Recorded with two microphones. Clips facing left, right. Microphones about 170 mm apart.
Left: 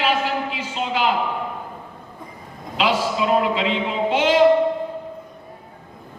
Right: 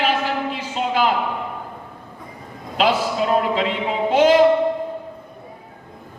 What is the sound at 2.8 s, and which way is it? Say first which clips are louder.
Speech: right 2 dB; 45° right (ahead or behind).